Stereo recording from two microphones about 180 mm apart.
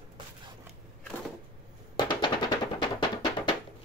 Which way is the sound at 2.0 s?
25° left (ahead or behind).